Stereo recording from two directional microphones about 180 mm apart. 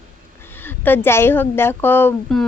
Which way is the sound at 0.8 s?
10° left (ahead or behind).